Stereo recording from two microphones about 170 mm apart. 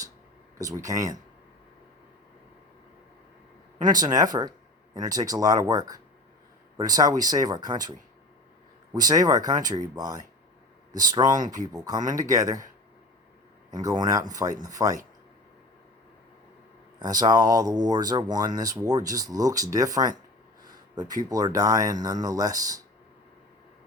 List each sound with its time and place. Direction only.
0.6 s speech: 20° right (ahead or behind)
3.8 s speech: 25° right (ahead or behind)
13.7 s speech: 20° right (ahead or behind)
17.0 s speech: 25° right (ahead or behind)